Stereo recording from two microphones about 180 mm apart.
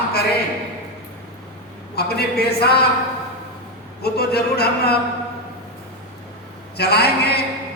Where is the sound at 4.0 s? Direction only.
60° left (ahead or behind).